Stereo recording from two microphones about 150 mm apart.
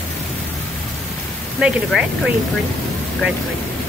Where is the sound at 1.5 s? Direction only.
5° right (ahead or behind).